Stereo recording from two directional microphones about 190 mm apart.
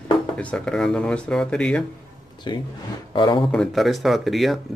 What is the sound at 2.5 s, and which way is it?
Speech, 25° left (ahead or behind).